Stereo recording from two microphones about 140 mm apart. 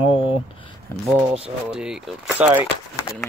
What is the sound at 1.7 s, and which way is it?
Speech, 5° right (ahead or behind).